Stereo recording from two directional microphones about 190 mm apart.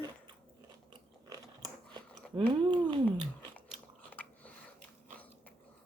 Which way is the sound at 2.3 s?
25° right (ahead or behind).